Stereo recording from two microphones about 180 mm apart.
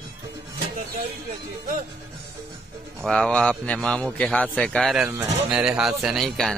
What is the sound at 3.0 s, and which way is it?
A man's voice, 5° left (ahead or behind).